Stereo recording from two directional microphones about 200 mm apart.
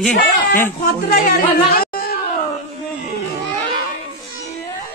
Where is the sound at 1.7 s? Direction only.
50° left (ahead or behind).